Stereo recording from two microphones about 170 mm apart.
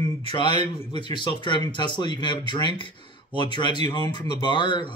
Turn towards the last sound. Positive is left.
turn(degrees=30)  # may be behind; listen again after turning